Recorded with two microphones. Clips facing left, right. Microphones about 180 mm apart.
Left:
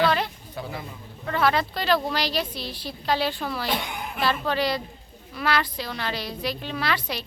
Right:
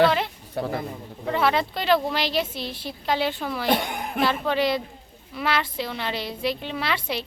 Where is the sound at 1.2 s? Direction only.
20° right (ahead or behind).